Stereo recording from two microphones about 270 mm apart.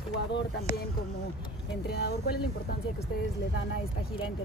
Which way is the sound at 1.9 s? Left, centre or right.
Left.